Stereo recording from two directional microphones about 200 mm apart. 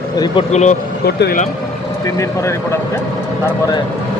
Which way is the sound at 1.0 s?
50° left (ahead or behind).